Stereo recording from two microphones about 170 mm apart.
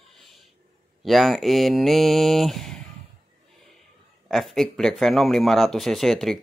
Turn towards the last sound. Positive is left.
turn(degrees=0)  # may be behind; listen again after turning